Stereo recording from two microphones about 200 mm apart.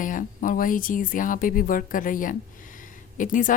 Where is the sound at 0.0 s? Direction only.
40° left (ahead or behind).